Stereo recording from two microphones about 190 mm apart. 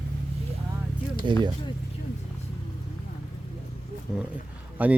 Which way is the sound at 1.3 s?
25° right (ahead or behind).